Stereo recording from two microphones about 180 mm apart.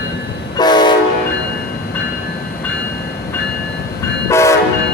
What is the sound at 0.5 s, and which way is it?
Train, 25° left (ahead or behind).